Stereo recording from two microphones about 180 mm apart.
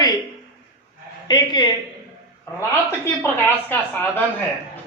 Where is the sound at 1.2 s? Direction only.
25° left (ahead or behind).